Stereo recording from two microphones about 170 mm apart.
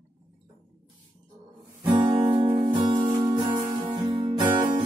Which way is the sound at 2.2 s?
20° right (ahead or behind).